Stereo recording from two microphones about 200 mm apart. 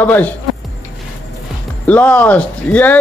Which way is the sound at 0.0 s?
10° left (ahead or behind).